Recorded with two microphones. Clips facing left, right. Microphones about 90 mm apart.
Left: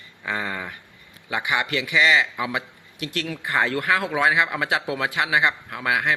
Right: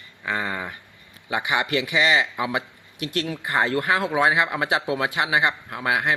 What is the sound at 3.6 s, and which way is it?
Speech, 25° right (ahead or behind).